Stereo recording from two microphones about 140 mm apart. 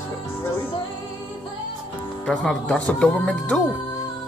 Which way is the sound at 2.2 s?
5° left (ahead or behind).